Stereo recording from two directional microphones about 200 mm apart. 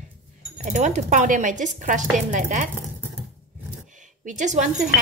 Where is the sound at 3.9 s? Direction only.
40° right (ahead or behind).